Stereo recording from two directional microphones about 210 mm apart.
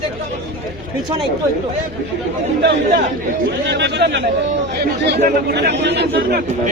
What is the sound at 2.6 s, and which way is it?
A man's voice, 55° right (ahead or behind).